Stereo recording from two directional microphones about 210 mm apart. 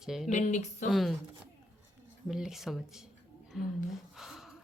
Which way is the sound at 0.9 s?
Centre (ahead or behind).